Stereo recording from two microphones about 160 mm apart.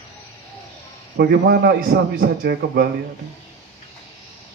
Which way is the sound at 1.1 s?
75° right (ahead or behind).